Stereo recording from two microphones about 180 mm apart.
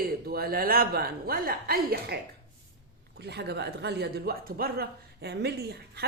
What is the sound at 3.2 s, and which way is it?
Speech, 65° right (ahead or behind).